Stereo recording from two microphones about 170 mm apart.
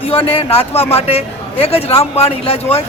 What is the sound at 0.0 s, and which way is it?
A man's voice, 35° left (ahead or behind).